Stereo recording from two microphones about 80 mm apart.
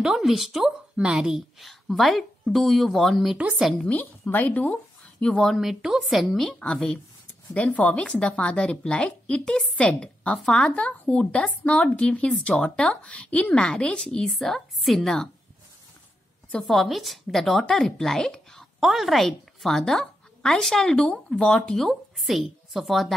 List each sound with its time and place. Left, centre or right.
0.0 s a woman's voice: centre
3.3 s speech: centre
3.8 s speech: centre
5.2 s a woman's voice: centre
6.4 s speech: centre
16.5 s a woman's voice: centre